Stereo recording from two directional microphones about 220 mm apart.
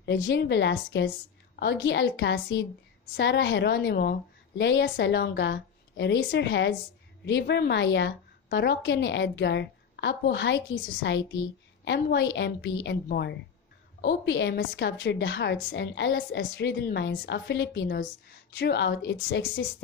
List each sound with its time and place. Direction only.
0.0 s a woman's voice: 50° left (ahead or behind)